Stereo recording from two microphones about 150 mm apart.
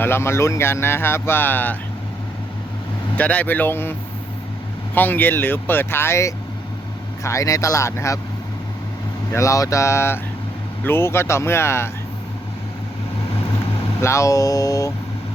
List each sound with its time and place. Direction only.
0.0 s speech: 15° left (ahead or behind)
3.2 s speech: 10° left (ahead or behind)
4.9 s speech: 10° left (ahead or behind)
9.3 s speech: 20° left (ahead or behind)
14.0 s speech: 20° left (ahead or behind)